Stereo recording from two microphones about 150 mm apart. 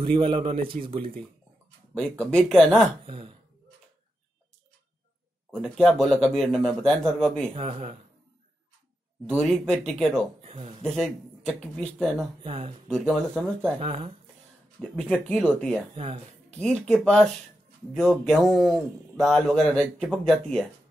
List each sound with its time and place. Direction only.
0.0 s a man's voice: 35° right (ahead or behind)
2.0 s speech: 5° left (ahead or behind)
3.1 s a man's voice: 35° right (ahead or behind)
5.5 s speech: 5° left (ahead or behind)
7.5 s a man's voice: 40° right (ahead or behind)
9.2 s speech: 5° left (ahead or behind)
12.4 s a man's voice: 40° right (ahead or behind)
12.8 s speech: centre (ahead or behind)
13.7 s a man's voice: 40° right (ahead or behind)
14.8 s speech: 5° left (ahead or behind)
15.9 s speech: 40° right (ahead or behind)
16.5 s speech: 5° left (ahead or behind)